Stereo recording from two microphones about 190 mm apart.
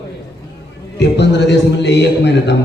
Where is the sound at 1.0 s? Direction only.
65° left (ahead or behind).